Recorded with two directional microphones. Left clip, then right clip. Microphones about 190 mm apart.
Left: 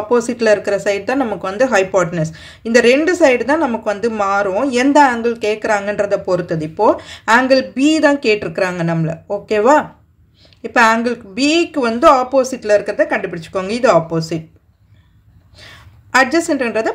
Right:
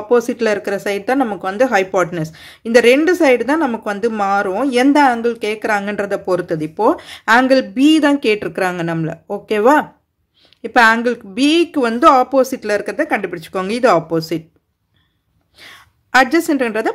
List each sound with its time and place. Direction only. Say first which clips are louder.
0.1 s speech: left 1 dB; 35° right (ahead or behind)
15.5 s a woman's voice: even; 40° right (ahead or behind)